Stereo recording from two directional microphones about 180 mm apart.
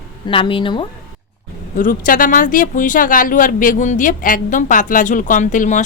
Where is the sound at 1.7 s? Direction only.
50° left (ahead or behind).